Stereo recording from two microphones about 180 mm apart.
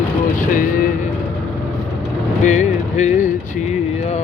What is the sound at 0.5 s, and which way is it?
Vehicle, 50° left (ahead or behind).